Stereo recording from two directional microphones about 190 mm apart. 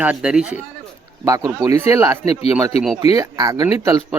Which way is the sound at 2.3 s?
30° left (ahead or behind).